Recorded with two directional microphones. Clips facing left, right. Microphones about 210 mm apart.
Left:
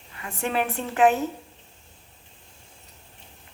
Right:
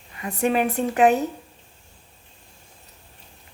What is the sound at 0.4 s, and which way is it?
Speech, 15° right (ahead or behind).